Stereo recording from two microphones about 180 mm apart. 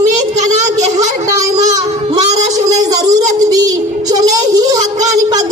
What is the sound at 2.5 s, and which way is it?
Child singing, 20° right (ahead or behind).